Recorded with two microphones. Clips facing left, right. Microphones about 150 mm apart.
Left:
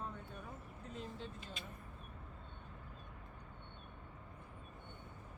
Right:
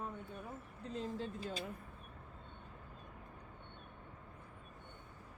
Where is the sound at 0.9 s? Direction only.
35° right (ahead or behind).